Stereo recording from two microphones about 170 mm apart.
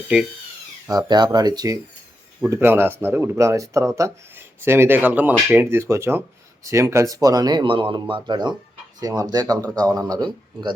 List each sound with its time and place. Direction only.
0.9 s speech: 25° right (ahead or behind)